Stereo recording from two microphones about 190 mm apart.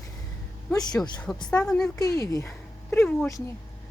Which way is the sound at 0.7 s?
20° left (ahead or behind).